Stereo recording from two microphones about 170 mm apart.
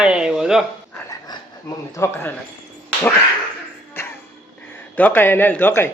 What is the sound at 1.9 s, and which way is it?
Speech, 15° left (ahead or behind).